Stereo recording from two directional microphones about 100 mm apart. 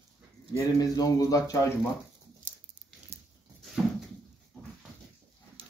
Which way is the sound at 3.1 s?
90° right.